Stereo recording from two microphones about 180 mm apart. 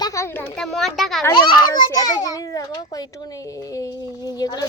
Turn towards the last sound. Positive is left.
turn(degrees=20)  # may be behind; listen again after turning